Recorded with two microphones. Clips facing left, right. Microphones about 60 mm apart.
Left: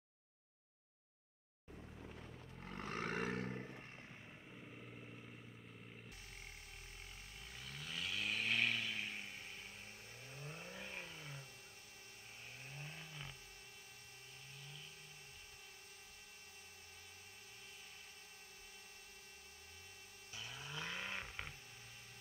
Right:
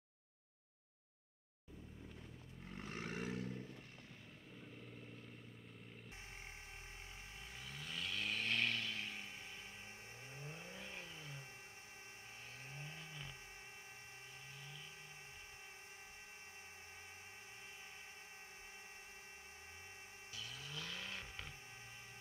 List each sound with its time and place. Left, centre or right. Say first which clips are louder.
1.8 s vehicle: left 2 dB; left
2.6 s roar: left 4 dB; left
4.5 s vehicle: right 1 dB; left
7.6 s vehicle: left 1 dB; centre
10.3 s vehicle: left 2 dB; right
10.8 s vehicle: left 1 dB; left
12.6 s vehicle: even; right
20.3 s vehicle: left 2 dB; left